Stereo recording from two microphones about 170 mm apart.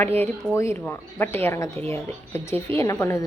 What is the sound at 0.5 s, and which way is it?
Speech, 15° left (ahead or behind).